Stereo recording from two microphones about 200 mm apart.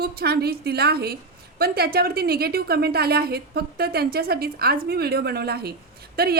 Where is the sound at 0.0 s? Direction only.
50° right (ahead or behind).